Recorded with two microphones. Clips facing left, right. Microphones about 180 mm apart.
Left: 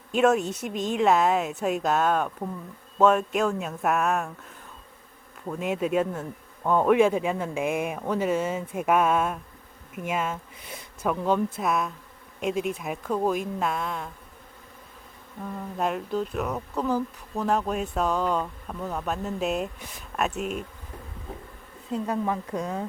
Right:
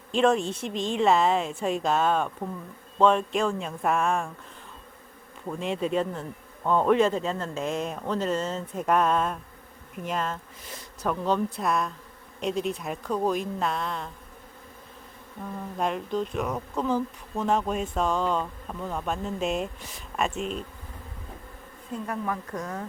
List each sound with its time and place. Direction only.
0.1 s speech: 5° left (ahead or behind)
5.5 s speech: 5° left (ahead or behind)
15.8 s speech: 5° left (ahead or behind)
21.9 s speech: 20° left (ahead or behind)